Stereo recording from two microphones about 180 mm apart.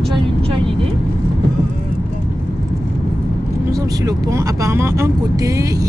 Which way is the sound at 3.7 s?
20° right (ahead or behind).